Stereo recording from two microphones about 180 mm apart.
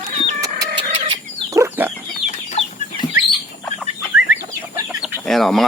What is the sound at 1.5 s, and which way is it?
Chicken, 15° right (ahead or behind).